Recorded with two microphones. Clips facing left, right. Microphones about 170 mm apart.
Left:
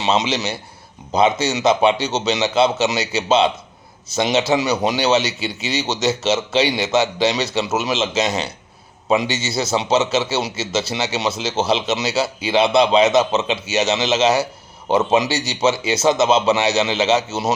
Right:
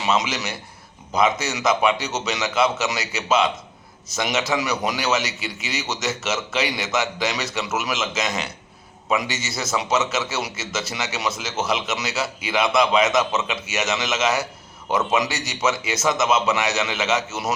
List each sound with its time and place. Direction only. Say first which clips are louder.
0.0 s a man's voice: left 4 dB; 30° left (ahead or behind)